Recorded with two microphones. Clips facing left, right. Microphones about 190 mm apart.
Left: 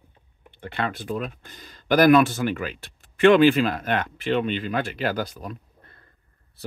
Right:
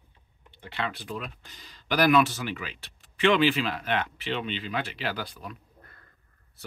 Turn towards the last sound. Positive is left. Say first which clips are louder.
# even
turn(degrees=30)  # may be behind; listen again after turning